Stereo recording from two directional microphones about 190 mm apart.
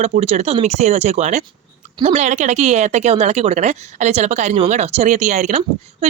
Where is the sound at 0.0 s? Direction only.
35° right (ahead or behind).